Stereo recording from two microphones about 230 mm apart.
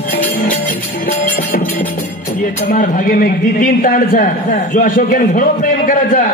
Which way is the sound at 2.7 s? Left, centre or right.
Left.